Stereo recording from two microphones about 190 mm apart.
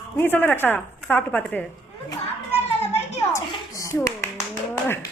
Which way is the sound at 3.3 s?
15° left (ahead or behind).